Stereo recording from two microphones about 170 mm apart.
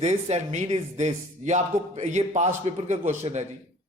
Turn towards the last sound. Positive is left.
turn(degrees=-45)  # may be behind; listen again after turning